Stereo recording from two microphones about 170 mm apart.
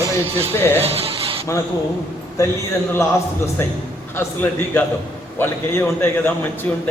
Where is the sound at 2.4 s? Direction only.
20° left (ahead or behind).